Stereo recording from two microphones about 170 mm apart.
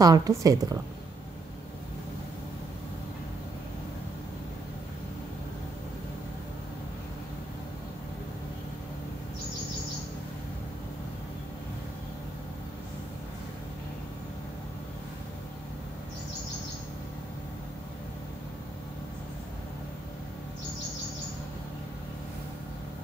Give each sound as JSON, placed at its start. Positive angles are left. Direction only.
{"t": 0.0, "sound": "a woman's voice", "side_deg": -20}